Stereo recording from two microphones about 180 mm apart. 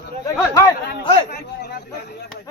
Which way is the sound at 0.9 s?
65° left (ahead or behind).